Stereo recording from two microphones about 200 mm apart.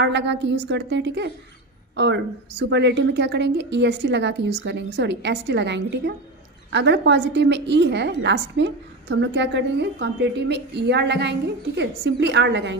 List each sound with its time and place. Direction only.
0.0 s a woman's voice: 60° right (ahead or behind)